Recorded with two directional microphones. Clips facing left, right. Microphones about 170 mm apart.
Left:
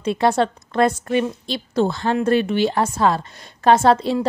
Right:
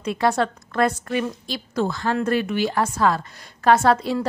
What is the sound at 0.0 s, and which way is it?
A woman's voice, 25° left (ahead or behind).